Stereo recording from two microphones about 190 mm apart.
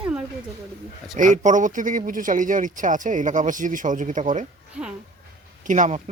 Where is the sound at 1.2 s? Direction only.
40° right (ahead or behind).